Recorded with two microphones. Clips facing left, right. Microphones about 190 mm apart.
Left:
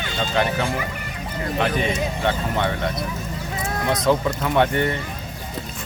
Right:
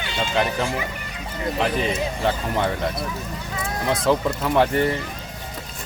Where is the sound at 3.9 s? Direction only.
Centre (ahead or behind).